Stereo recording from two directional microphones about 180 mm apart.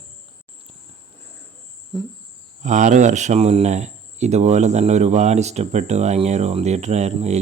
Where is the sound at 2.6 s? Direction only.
40° right (ahead or behind).